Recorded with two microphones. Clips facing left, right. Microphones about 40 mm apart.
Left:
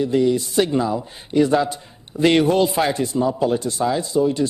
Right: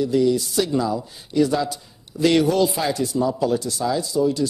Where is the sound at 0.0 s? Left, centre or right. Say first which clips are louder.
Left 1 dB; left.